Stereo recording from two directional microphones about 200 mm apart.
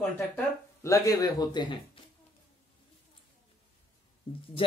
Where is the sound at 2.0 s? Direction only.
25° left (ahead or behind).